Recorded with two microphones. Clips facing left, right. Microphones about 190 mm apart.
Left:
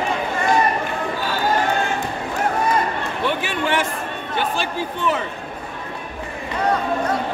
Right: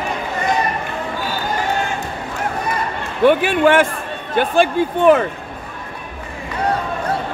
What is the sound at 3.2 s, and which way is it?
A man's voice, 55° right (ahead or behind).